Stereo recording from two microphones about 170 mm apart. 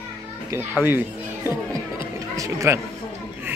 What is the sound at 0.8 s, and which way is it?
A child's voice, 15° right (ahead or behind).